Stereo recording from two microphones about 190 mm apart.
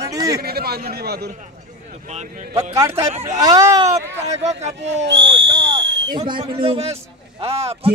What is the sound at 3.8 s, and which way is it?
Speech, 35° right (ahead or behind).